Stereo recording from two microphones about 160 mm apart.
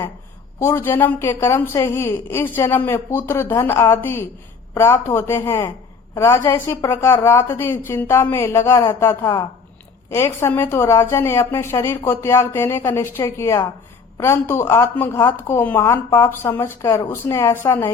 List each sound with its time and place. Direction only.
0.6 s speech: 15° left (ahead or behind)